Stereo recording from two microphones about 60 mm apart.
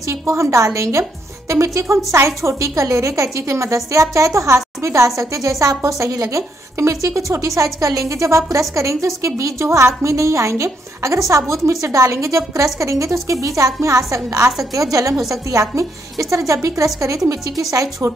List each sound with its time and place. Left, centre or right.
0.0 s a woman's voice: right